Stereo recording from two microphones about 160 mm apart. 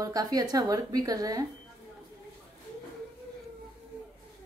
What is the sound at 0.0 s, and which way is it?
A woman's voice, 25° right (ahead or behind).